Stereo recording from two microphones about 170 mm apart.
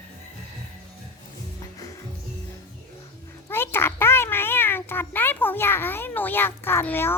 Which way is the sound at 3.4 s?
15° left (ahead or behind).